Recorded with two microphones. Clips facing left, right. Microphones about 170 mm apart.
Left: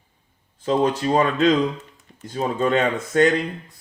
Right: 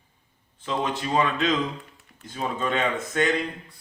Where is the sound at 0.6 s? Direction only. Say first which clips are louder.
Left 8 dB; 40° left (ahead or behind).